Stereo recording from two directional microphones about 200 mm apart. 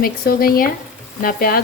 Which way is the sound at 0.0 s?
45° left (ahead or behind).